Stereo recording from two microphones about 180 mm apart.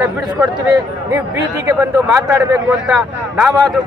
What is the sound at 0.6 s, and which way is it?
A man's voice, 20° right (ahead or behind).